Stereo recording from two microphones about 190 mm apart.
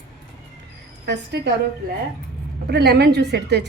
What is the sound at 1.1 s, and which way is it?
Speech, 60° right (ahead or behind).